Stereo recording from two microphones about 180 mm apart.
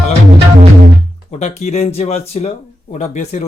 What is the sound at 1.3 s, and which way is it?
Speech, 35° left (ahead or behind).